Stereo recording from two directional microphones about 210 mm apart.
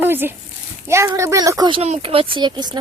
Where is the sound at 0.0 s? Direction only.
10° right (ahead or behind).